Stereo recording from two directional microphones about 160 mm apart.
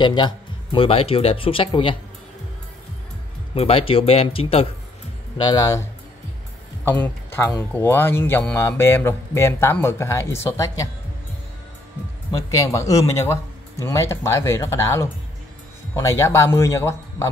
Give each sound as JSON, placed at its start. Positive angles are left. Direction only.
{"t": 0.0, "sound": "speech", "side_deg": 30}
{"t": 3.5, "sound": "speech", "side_deg": 35}
{"t": 5.4, "sound": "speech", "side_deg": 25}
{"t": 12.3, "sound": "speech", "side_deg": 20}